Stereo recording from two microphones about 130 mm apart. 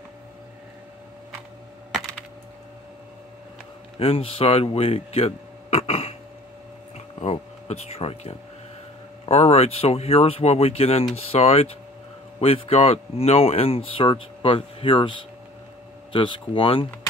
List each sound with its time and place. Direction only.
1.9 s computer keyboard: 5° left (ahead or behind)
4.0 s speech: 45° left (ahead or behind)
7.2 s a sound: 55° left (ahead or behind)
9.2 s speech: 55° left (ahead or behind)